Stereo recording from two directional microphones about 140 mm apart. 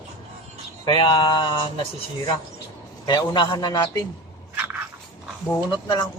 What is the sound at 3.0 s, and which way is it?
A man's voice, 30° left (ahead or behind).